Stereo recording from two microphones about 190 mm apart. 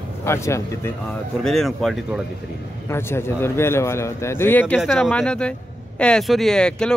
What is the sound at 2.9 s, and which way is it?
A man's voice, 10° left (ahead or behind).